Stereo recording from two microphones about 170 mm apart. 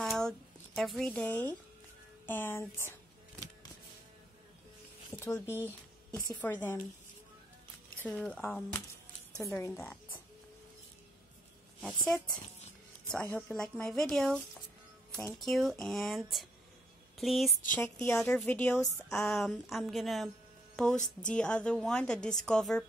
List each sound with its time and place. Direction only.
0.0 s a sound: centre (ahead or behind)
0.7 s a woman's voice: centre (ahead or behind)
5.2 s a woman's voice: 15° left (ahead or behind)
8.0 s a woman's voice: 10° left (ahead or behind)
13.1 s a woman's voice: 5° left (ahead or behind)
20.7 s music: 5° left (ahead or behind)
21.3 s a woman's voice: 5° left (ahead or behind)